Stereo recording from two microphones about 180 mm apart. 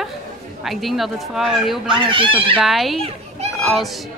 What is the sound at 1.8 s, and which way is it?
Speech, 25° right (ahead or behind).